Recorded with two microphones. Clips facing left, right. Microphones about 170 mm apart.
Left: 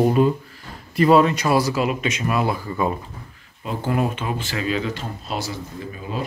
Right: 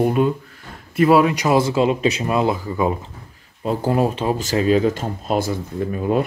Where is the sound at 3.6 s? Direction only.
40° right (ahead or behind).